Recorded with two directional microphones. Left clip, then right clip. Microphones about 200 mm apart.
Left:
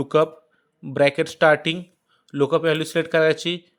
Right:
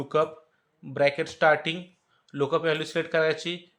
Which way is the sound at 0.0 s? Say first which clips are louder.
Left 6 dB; 50° left (ahead or behind).